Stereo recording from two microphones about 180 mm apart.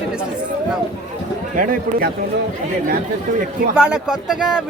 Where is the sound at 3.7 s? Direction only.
5° right (ahead or behind).